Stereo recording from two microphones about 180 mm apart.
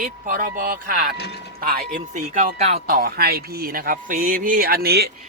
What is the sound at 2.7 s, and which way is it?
Speech, 55° right (ahead or behind).